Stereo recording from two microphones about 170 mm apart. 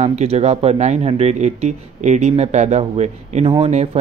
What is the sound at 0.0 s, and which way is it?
Speech, 40° right (ahead or behind).